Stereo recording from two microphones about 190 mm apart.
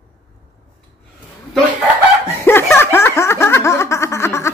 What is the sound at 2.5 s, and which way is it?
Snicker, 10° left (ahead or behind).